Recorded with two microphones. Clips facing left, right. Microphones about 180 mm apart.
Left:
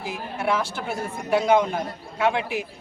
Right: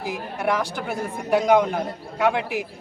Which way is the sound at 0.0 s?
15° right (ahead or behind).